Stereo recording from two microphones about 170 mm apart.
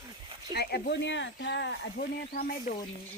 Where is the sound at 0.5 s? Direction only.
70° left (ahead or behind).